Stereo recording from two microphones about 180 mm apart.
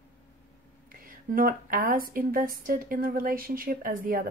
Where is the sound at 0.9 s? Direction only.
50° right (ahead or behind).